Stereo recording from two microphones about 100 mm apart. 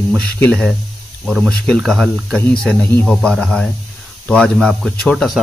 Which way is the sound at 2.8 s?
20° left (ahead or behind).